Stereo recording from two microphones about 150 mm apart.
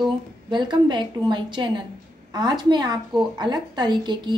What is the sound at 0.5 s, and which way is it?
A woman's voice, 30° right (ahead or behind).